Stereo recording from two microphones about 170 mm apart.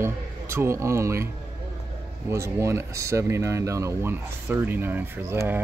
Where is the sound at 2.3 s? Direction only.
15° right (ahead or behind).